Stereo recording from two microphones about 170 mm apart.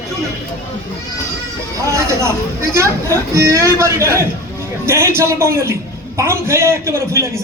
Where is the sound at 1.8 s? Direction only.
15° right (ahead or behind).